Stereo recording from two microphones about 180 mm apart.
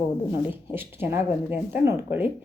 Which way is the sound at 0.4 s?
10° right (ahead or behind).